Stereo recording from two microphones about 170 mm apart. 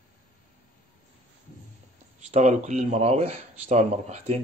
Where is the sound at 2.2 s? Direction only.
45° right (ahead or behind).